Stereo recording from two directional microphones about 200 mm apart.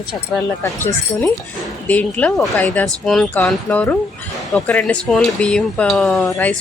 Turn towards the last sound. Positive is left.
turn(degrees=5)  # may be behind; listen again after turning